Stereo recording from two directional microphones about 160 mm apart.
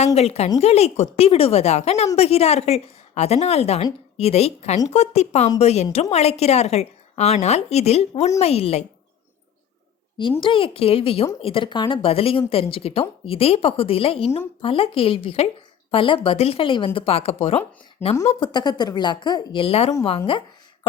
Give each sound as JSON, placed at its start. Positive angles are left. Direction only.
{"t": 0.0, "sound": "speech", "side_deg": 40}
{"t": 10.4, "sound": "speech", "side_deg": 35}
{"t": 18.3, "sound": "a woman's voice", "side_deg": 30}